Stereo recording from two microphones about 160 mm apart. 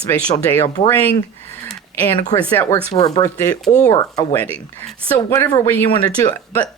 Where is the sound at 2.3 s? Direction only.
35° left (ahead or behind).